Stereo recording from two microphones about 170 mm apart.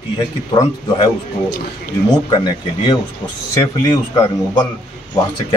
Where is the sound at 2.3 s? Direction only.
25° left (ahead or behind).